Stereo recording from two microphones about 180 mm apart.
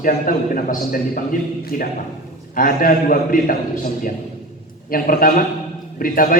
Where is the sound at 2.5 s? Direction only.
50° left (ahead or behind).